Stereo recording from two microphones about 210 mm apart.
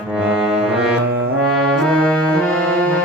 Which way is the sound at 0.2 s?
Centre (ahead or behind).